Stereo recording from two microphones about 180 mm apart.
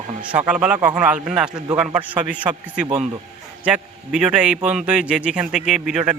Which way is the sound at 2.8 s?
30° right (ahead or behind).